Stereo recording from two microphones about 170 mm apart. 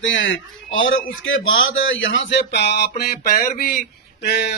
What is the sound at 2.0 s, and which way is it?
Speech, 85° left.